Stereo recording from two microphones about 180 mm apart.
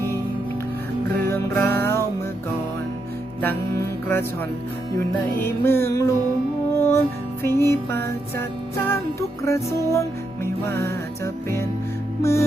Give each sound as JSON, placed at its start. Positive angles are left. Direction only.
{"t": 1.3, "sound": "music", "side_deg": 10}
{"t": 3.4, "sound": "music", "side_deg": 10}
{"t": 5.6, "sound": "music", "side_deg": 15}
{"t": 12.2, "sound": "music", "side_deg": 15}